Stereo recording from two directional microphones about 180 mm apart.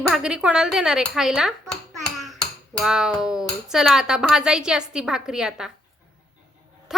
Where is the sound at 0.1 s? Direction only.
5° right (ahead or behind).